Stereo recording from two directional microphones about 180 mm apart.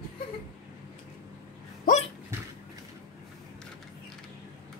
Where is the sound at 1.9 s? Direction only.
50° left (ahead or behind).